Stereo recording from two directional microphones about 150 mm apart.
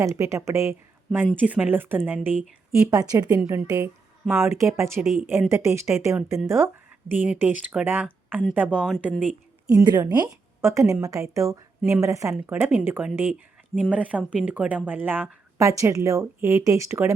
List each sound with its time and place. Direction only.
0.0 s a woman's voice: 20° right (ahead or behind)
2.9 s a woman's voice: 25° right (ahead or behind)
4.9 s speech: centre (ahead or behind)
5.5 s a woman's voice: 15° right (ahead or behind)
9.6 s a woman's voice: 25° right (ahead or behind)